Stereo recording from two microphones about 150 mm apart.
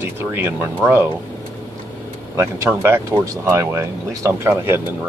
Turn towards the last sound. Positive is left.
turn(degrees=-15)  # may be behind; listen again after turning